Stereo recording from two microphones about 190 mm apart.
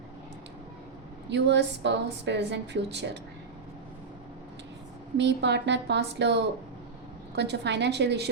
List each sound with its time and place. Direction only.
1.3 s a woman's voice: 65° right (ahead or behind)
5.1 s a woman's voice: 65° right (ahead or behind)